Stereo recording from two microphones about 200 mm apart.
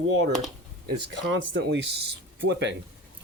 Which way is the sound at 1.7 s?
60° right (ahead or behind).